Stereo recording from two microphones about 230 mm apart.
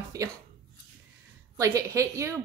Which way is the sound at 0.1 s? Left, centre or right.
Centre.